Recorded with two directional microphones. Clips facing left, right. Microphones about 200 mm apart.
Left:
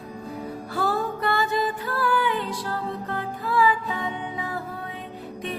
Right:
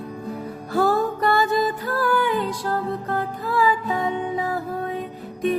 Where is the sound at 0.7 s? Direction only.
40° right (ahead or behind).